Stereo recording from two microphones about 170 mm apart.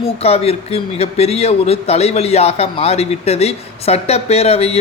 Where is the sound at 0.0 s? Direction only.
35° left (ahead or behind).